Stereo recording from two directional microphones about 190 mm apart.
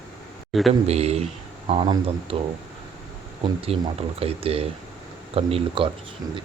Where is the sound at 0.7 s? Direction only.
35° right (ahead or behind).